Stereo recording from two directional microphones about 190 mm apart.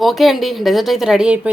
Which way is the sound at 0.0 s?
Centre (ahead or behind).